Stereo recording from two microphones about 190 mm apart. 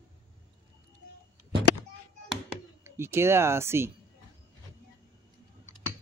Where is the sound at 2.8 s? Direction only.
15° right (ahead or behind).